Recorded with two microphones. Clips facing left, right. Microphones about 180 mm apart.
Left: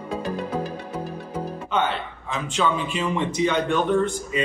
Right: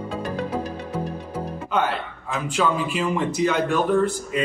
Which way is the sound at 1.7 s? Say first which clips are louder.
Right 1 dB; 5° right (ahead or behind).